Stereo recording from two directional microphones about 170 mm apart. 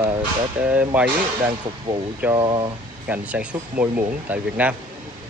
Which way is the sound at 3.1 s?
10° right (ahead or behind).